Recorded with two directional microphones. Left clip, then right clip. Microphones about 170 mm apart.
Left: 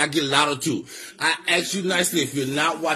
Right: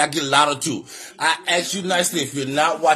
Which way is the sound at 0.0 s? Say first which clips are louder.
Right 3 dB; 20° right (ahead or behind).